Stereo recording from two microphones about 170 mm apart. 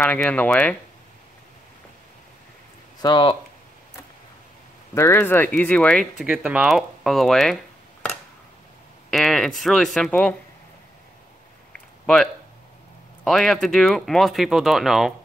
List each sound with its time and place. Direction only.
0.0 s speech: 5° left (ahead or behind)
3.0 s speech: 25° left (ahead or behind)
4.9 s speech: 15° left (ahead or behind)
9.1 s speech: centre (ahead or behind)
13.2 s speech: centre (ahead or behind)